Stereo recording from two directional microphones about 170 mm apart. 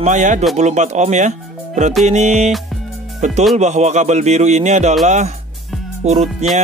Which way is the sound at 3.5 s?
45° right (ahead or behind).